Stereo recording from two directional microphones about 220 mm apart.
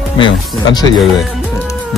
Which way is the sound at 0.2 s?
20° left (ahead or behind).